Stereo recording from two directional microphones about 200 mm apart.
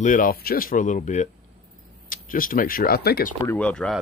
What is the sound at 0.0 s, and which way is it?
Speech, 45° left (ahead or behind).